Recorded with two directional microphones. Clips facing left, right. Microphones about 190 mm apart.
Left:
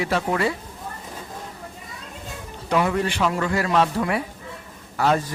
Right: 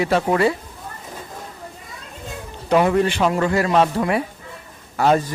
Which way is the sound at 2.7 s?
30° right (ahead or behind).